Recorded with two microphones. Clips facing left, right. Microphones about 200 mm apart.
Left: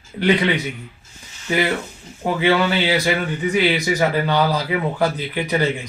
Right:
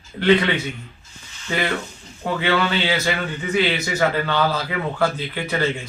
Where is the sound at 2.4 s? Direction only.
15° left (ahead or behind).